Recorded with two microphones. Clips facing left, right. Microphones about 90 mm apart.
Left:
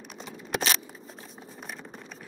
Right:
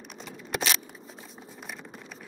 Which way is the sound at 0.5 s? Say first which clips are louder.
Left 1 dB; centre (ahead or behind).